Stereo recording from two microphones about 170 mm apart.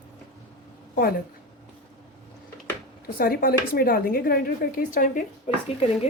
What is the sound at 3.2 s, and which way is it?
A woman's voice, 60° left (ahead or behind).